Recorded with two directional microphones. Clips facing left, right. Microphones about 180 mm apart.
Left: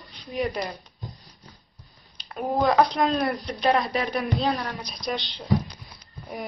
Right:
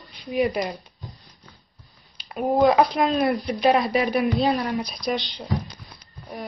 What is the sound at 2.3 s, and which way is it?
Speech, 15° right (ahead or behind).